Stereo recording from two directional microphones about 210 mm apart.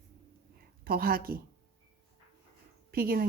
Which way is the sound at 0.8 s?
45° right (ahead or behind).